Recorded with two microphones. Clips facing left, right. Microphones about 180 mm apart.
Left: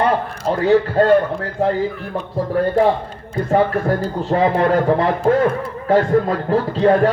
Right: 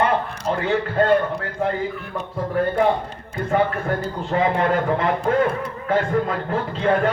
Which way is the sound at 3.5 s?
35° left (ahead or behind).